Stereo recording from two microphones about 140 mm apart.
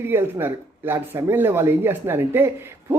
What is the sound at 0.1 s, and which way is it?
A man's voice, 15° right (ahead or behind).